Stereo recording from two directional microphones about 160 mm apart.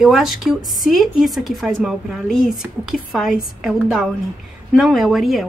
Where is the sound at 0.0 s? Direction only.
Centre (ahead or behind).